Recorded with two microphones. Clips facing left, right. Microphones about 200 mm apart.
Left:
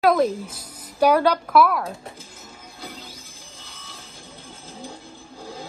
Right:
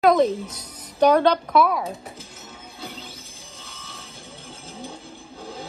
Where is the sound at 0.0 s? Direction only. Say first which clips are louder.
Right 1 dB; 5° left (ahead or behind).